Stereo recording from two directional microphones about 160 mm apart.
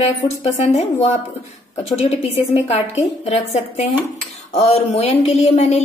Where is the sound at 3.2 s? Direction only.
45° left (ahead or behind).